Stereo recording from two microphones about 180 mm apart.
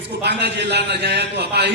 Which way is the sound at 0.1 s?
70° right (ahead or behind).